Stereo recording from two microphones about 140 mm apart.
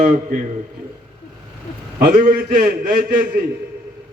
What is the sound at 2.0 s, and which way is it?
A man's voice, 85° right.